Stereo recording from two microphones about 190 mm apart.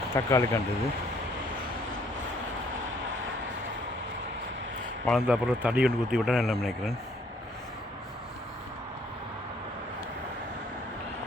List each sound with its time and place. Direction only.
0.1 s speech: 15° left (ahead or behind)
5.0 s speech: 5° right (ahead or behind)